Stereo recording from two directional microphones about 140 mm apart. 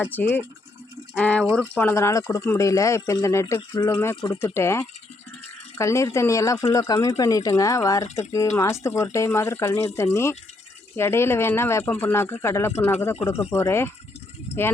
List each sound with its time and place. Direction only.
0.0 s speech: 15° left (ahead or behind)
1.1 s a sound: 10° left (ahead or behind)
1.5 s speech: 10° left (ahead or behind)